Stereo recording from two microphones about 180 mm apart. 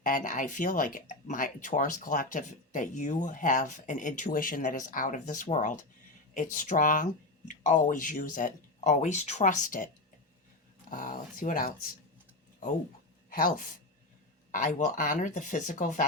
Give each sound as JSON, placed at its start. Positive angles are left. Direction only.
{"t": 0.0, "sound": "speech", "side_deg": 50}
{"t": 10.9, "sound": "speech", "side_deg": 50}
{"t": 14.5, "sound": "speech", "side_deg": 45}